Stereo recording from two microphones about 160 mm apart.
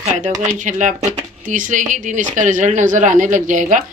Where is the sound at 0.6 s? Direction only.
50° right (ahead or behind).